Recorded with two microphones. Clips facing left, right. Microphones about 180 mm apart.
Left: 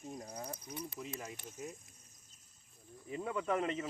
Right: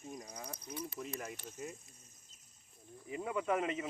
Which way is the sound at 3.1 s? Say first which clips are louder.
Right 1 dB; 10° right (ahead or behind).